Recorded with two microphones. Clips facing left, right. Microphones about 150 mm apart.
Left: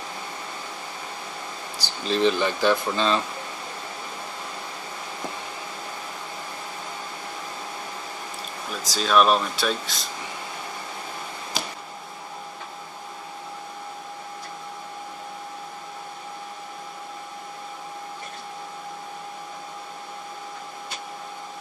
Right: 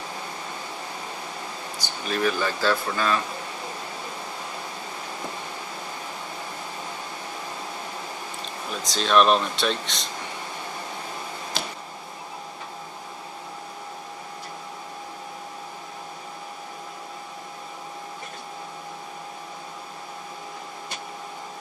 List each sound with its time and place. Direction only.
1.8 s speech: 30° left (ahead or behind)
8.8 s speech: 5° left (ahead or behind)